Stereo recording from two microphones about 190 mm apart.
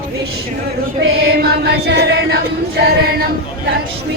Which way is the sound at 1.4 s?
55° right (ahead or behind).